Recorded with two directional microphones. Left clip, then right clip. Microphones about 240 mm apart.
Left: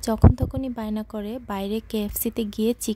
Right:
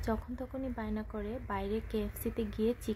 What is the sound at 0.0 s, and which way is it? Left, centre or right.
A woman's voice, left.